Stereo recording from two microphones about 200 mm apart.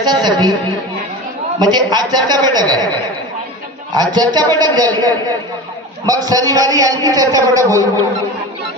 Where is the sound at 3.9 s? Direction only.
20° right (ahead or behind).